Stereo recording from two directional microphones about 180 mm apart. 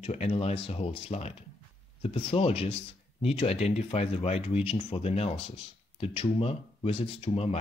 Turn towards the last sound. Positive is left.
turn(degrees=35)  # may be behind; listen again after turning